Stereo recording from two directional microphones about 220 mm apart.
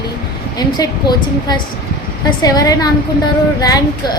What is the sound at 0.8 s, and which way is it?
A woman's voice, 20° left (ahead or behind).